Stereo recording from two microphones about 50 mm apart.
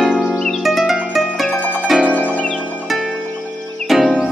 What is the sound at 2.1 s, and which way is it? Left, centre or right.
Music, left.